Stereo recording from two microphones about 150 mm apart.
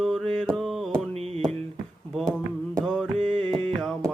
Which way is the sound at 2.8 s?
Centre (ahead or behind).